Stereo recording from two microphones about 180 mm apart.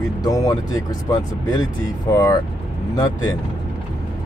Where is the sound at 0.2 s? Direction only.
20° left (ahead or behind).